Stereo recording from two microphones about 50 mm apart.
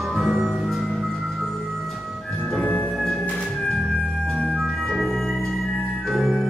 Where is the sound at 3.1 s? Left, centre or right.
Centre.